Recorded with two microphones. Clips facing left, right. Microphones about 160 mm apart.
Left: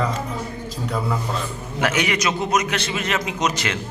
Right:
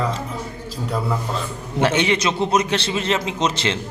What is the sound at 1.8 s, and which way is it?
A man's voice, 30° right (ahead or behind).